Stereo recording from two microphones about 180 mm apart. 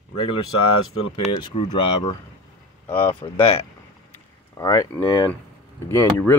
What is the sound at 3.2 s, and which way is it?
Speech, 30° left (ahead or behind).